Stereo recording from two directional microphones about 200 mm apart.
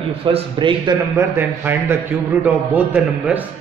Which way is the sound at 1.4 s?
10° right (ahead or behind).